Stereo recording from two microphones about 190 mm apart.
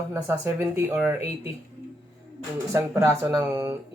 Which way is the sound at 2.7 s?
15° right (ahead or behind).